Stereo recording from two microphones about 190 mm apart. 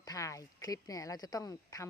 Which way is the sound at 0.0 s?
20° left (ahead or behind).